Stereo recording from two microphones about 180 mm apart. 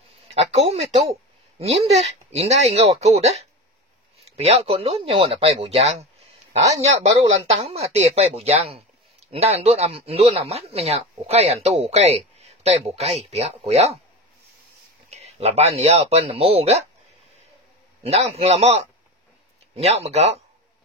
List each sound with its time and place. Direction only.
0.3 s speech: 35° right (ahead or behind)
15.0 s speech: 35° right (ahead or behind)
18.0 s speech: 35° right (ahead or behind)